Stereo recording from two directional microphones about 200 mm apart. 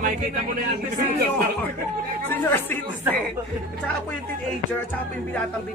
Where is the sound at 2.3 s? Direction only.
10° left (ahead or behind).